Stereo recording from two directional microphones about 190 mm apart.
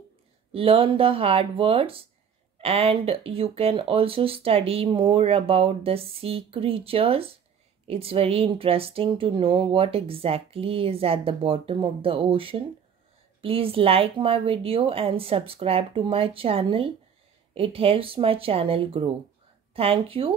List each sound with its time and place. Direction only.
0.5 s speech: 30° right (ahead or behind)